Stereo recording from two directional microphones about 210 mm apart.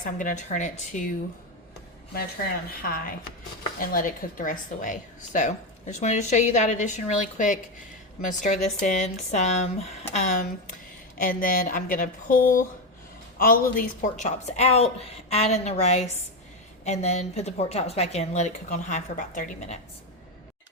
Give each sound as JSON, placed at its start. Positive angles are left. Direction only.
{"t": 0.0, "sound": "a woman's voice", "side_deg": 40}
{"t": 2.8, "sound": "a woman's voice", "side_deg": 45}
{"t": 11.2, "sound": "a woman's voice", "side_deg": 40}